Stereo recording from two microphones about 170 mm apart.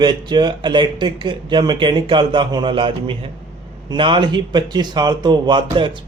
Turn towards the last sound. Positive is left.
turn(degrees=-25)  # may be behind; listen again after turning